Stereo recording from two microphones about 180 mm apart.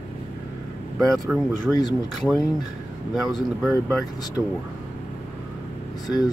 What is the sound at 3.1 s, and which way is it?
Speech, centre (ahead or behind).